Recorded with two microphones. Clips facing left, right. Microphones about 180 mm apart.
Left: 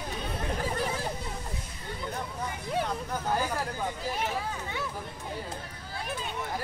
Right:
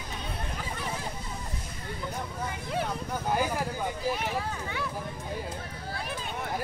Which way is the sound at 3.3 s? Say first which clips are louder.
Right 2 dB; 15° right (ahead or behind).